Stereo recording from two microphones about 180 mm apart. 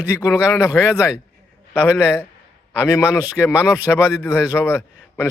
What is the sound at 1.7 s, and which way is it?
Speech, 5° right (ahead or behind).